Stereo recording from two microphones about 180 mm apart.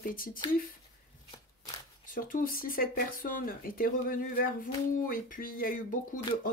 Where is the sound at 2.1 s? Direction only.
50° left (ahead or behind).